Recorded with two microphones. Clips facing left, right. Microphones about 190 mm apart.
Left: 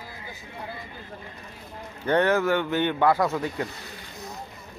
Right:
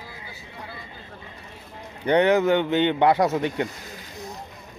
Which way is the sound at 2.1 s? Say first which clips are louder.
Right 3 dB; 15° right (ahead or behind).